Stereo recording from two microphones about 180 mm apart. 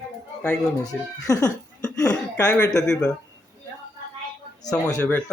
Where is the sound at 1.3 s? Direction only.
20° left (ahead or behind).